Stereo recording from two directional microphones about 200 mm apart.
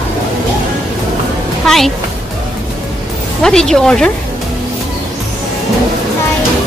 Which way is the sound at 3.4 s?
5° left (ahead or behind).